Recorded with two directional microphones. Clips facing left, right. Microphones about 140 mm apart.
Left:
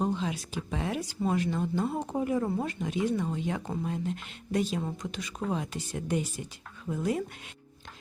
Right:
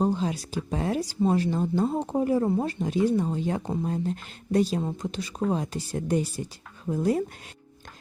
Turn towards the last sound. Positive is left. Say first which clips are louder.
# right 5 dB
turn(degrees=-35)  # may be behind; listen again after turning